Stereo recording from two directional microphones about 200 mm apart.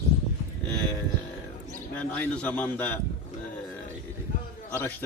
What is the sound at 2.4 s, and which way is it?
Speech, 10° left (ahead or behind).